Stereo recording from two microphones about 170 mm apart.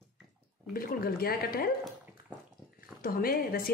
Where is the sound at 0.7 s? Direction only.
60° left (ahead or behind).